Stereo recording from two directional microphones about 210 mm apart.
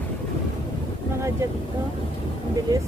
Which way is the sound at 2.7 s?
15° right (ahead or behind).